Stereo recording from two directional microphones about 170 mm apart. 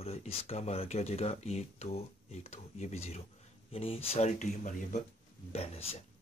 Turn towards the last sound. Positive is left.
turn(degrees=35)  # may be behind; listen again after turning